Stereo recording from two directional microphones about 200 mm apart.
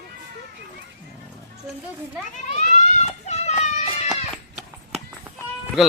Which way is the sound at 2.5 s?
35° left (ahead or behind).